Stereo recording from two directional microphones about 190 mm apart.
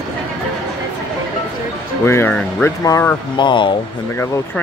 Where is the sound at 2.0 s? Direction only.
10° left (ahead or behind).